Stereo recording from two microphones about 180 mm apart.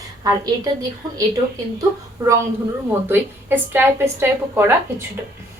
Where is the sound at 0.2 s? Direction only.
20° right (ahead or behind).